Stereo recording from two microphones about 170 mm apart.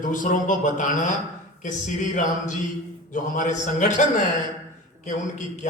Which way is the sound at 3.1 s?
50° left (ahead or behind).